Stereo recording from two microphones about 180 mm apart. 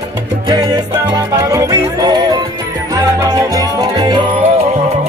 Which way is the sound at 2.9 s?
20° right (ahead or behind).